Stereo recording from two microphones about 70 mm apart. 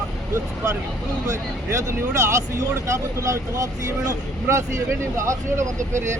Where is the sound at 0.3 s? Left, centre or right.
Right.